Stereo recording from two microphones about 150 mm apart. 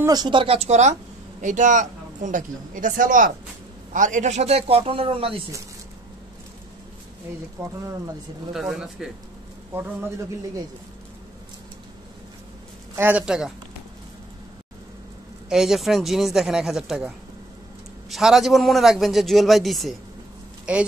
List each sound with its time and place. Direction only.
0.0 s a man's voice: 25° right (ahead or behind)
8.5 s a man's voice: 5° right (ahead or behind)
12.9 s speech: 10° right (ahead or behind)
15.5 s a man's voice: 5° right (ahead or behind)
18.1 s a man's voice: centre (ahead or behind)